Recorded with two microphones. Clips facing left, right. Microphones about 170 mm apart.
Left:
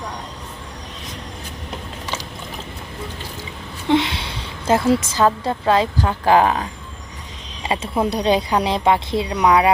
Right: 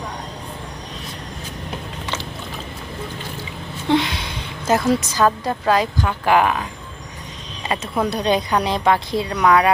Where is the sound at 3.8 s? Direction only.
25° left (ahead or behind).